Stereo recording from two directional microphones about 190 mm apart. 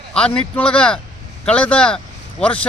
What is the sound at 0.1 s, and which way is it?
A man's voice, 5° left (ahead or behind).